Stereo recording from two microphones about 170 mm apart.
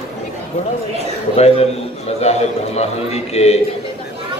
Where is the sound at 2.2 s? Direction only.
40° left (ahead or behind).